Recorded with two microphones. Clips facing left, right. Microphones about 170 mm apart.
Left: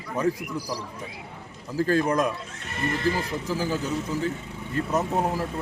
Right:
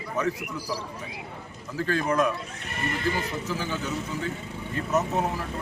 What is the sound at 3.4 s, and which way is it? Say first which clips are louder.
Speech: left 4 dB; 35° left (ahead or behind).